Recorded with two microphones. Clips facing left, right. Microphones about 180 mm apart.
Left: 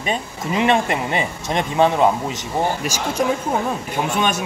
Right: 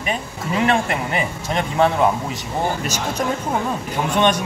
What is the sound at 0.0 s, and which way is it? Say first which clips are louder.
Speech: left 1 dB; 25° left (ahead or behind).